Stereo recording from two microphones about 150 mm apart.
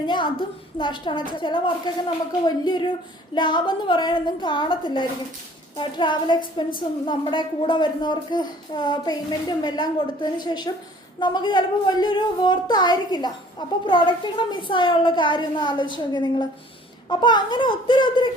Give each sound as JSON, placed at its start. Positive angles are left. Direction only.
{"t": 0.0, "sound": "a woman's voice", "side_deg": 30}